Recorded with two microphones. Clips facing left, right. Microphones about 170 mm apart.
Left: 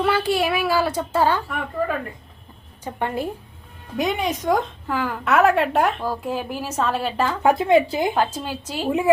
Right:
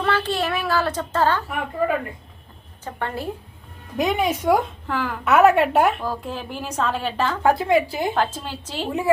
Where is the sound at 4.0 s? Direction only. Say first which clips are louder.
Right 2 dB; 5° right (ahead or behind).